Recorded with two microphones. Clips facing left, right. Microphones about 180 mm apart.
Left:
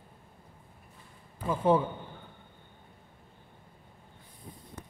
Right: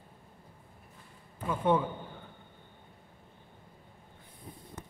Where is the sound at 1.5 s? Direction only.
30° left (ahead or behind).